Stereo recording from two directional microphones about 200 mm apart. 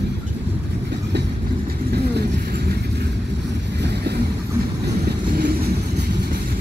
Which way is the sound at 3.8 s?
55° right (ahead or behind).